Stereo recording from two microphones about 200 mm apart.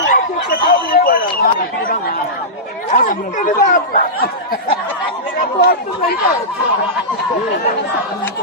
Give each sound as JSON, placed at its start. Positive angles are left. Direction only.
{"t": 0.1, "sound": "a sound", "side_deg": 45}
{"t": 2.9, "sound": "speech", "side_deg": 40}
{"t": 5.4, "sound": "speech", "side_deg": 50}